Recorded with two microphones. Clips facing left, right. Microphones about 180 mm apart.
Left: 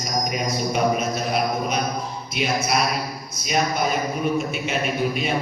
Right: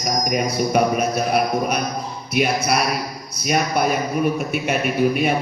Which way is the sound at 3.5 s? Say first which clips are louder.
Right 3 dB; 55° right (ahead or behind).